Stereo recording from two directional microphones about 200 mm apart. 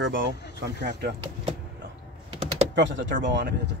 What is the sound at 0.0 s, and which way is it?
Speech, 70° right (ahead or behind).